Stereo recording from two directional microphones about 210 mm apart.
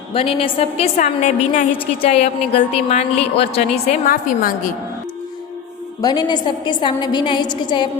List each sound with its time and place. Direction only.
0.1 s a woman's voice: 25° left (ahead or behind); by 4.7 s 40° left (ahead or behind)
6.0 s a woman's voice: 20° left (ahead or behind)